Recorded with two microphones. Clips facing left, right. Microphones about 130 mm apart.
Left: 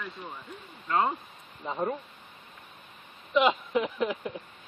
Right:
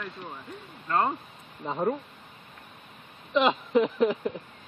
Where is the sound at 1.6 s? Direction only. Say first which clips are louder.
Right 3 dB; 15° right (ahead or behind).